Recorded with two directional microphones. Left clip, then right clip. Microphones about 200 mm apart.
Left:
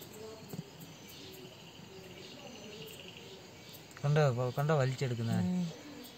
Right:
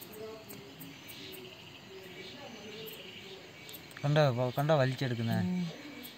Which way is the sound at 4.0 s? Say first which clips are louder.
Right 3 dB; 15° right (ahead or behind).